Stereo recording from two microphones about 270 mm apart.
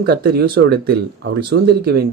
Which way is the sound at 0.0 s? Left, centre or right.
Right.